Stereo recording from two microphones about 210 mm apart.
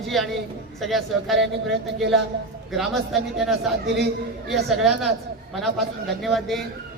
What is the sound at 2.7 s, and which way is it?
A man's voice, centre (ahead or behind).